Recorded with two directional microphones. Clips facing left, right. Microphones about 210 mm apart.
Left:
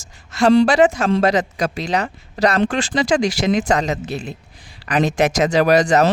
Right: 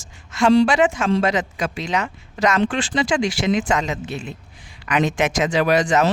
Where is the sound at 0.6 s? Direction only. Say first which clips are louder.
Left 3 dB; 40° left (ahead or behind).